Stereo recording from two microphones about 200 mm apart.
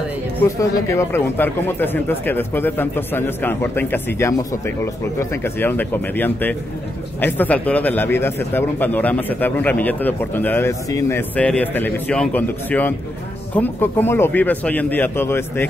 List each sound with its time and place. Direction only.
0.4 s speech: 15° left (ahead or behind)